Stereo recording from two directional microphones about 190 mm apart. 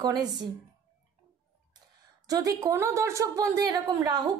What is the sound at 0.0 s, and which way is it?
Speech, 20° right (ahead or behind).